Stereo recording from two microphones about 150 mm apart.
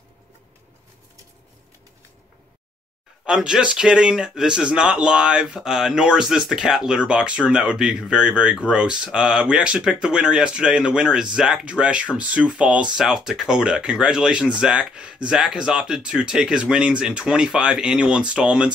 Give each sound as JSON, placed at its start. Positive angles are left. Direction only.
{"t": 3.3, "sound": "speech", "side_deg": -5}